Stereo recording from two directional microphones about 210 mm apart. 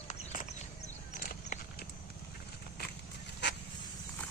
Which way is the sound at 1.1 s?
40° left (ahead or behind).